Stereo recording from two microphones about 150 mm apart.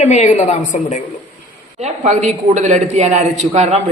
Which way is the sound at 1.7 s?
45° right (ahead or behind).